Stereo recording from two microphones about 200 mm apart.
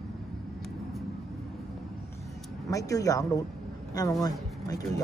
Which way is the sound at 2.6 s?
15° left (ahead or behind).